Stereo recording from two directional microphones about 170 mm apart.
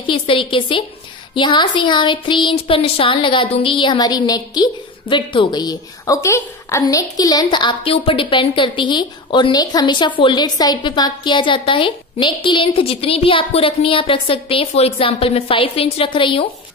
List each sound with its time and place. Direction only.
0.0 s a woman's voice: 30° left (ahead or behind)